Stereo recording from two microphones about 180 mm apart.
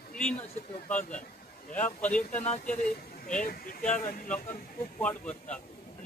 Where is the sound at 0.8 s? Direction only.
10° left (ahead or behind).